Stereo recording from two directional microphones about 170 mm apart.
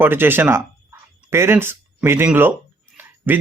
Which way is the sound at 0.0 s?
10° right (ahead or behind).